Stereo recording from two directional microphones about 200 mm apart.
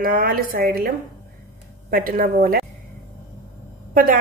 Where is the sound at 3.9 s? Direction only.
45° right (ahead or behind).